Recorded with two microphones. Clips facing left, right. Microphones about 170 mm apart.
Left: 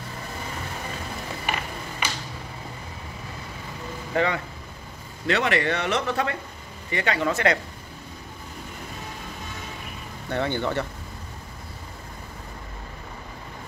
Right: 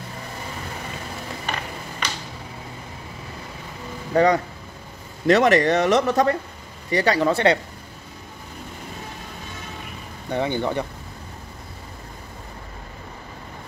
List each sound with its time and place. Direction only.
2.0 s a sound: 10° left (ahead or behind)
4.1 s speech: 40° right (ahead or behind)
10.3 s speech: 15° right (ahead or behind)